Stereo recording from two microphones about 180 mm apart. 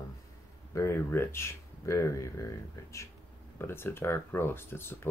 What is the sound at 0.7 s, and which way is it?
Speech, 15° left (ahead or behind).